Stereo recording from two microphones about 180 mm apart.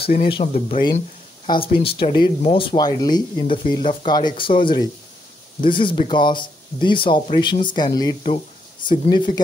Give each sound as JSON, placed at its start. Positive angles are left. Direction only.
{"t": 0.3, "sound": "speech", "side_deg": 30}